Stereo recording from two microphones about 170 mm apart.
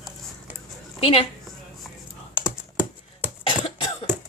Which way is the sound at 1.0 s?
35° left (ahead or behind).